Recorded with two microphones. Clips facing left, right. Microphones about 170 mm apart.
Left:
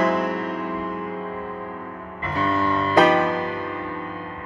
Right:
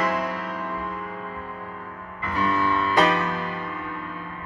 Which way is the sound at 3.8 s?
25° left (ahead or behind).